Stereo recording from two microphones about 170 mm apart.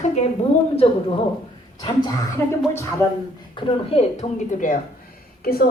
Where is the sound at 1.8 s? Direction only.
25° left (ahead or behind).